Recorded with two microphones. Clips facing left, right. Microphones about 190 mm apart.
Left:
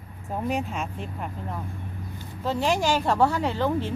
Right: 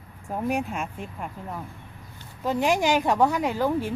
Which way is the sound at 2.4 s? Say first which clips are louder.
Right 1 dB; 15° right (ahead or behind).